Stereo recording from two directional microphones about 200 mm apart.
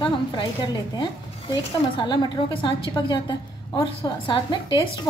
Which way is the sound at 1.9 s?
20° left (ahead or behind).